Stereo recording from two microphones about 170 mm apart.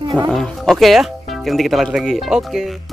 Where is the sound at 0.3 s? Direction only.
Centre (ahead or behind).